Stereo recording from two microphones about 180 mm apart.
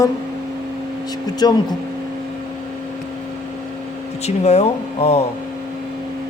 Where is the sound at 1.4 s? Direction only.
20° left (ahead or behind).